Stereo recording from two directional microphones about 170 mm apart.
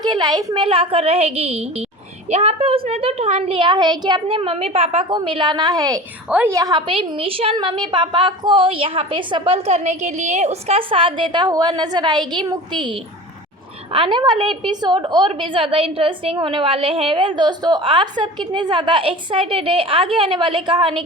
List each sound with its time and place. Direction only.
0.0 s a woman's voice: 25° right (ahead or behind)
13.9 s a woman's voice: 30° right (ahead or behind)